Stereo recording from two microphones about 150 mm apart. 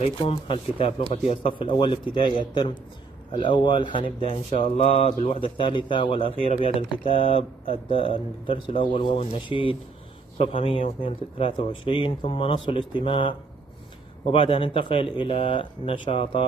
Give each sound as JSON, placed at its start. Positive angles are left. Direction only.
{"t": 0.0, "sound": "speech", "side_deg": 35}